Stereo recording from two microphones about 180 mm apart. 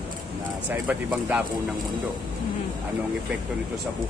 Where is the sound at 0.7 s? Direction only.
10° right (ahead or behind).